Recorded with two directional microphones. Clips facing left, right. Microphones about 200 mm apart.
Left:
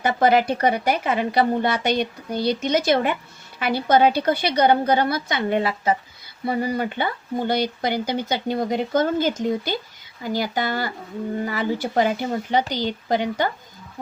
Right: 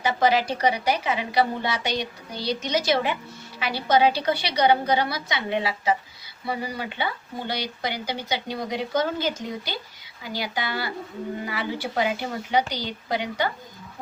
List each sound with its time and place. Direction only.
0.0 s speech: 55° left (ahead or behind)